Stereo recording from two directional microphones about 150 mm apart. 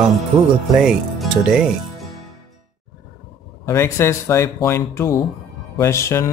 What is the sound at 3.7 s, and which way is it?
A man's voice, 20° left (ahead or behind).